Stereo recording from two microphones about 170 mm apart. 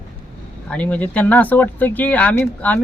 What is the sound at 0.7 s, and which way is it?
Speech, 10° left (ahead or behind).